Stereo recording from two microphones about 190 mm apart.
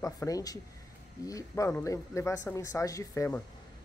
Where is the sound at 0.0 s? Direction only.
15° left (ahead or behind).